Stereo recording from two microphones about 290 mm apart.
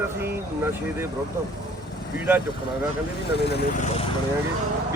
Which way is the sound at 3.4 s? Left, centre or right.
Left.